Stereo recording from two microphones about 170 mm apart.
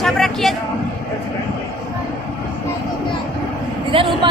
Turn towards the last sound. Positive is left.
turn(degrees=-30)  # may be behind; listen again after turning